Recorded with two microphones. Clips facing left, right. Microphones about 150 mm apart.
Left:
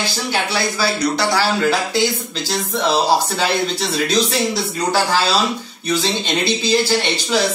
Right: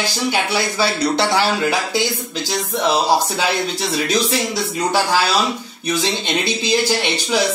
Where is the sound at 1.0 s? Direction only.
25° right (ahead or behind).